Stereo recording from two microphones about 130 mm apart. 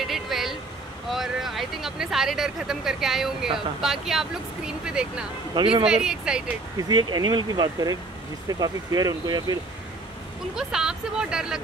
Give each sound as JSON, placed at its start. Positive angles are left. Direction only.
{"t": 0.0, "sound": "vehicle", "side_deg": 0}
{"t": 1.1, "sound": "speech", "side_deg": 0}
{"t": 5.5, "sound": "speech", "side_deg": -40}
{"t": 5.9, "sound": "speech", "side_deg": -5}
{"t": 6.8, "sound": "speech", "side_deg": -30}
{"t": 10.5, "sound": "speech", "side_deg": -5}